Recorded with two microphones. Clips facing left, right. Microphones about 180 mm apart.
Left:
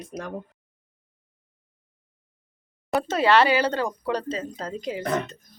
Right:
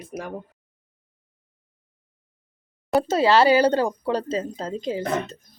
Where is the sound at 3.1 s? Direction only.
30° right (ahead or behind).